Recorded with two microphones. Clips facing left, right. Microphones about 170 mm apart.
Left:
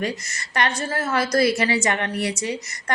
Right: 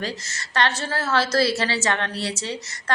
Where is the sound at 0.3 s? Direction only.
15° left (ahead or behind).